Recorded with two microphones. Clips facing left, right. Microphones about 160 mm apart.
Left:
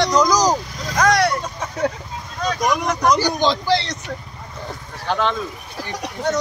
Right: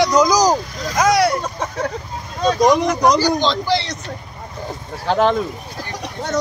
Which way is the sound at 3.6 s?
Centre (ahead or behind).